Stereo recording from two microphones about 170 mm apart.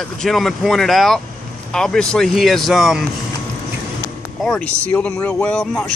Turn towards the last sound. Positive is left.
turn(degrees=5)  # may be behind; listen again after turning